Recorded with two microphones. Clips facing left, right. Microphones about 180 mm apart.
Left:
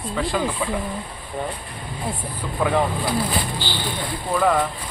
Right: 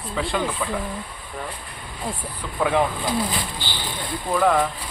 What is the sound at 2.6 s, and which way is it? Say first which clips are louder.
Speech: even; centre (ahead or behind).